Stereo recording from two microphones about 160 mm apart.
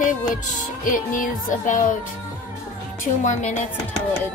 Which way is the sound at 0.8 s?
55° left (ahead or behind).